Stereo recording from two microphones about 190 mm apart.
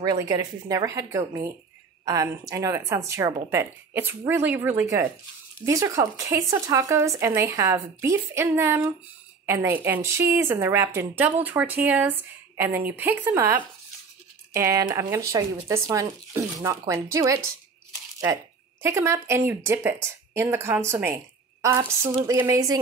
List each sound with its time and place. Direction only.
0.0 s speech: 20° right (ahead or behind)